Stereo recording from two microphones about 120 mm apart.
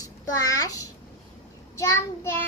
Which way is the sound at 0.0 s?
30° left (ahead or behind).